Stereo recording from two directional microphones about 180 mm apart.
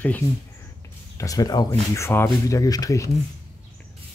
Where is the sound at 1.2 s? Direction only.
20° left (ahead or behind).